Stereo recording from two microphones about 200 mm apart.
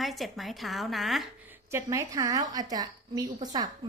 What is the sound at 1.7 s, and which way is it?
A woman's voice, 15° right (ahead or behind).